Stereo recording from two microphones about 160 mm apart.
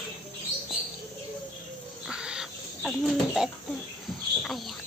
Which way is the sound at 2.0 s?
5° right (ahead or behind).